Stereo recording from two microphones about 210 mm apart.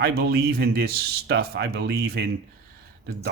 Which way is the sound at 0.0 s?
50° right (ahead or behind).